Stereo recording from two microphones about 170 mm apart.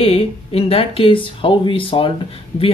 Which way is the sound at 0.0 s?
35° left (ahead or behind).